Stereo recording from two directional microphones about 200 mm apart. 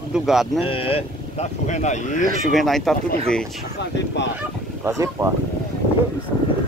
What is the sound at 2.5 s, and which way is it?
Speech, centre (ahead or behind).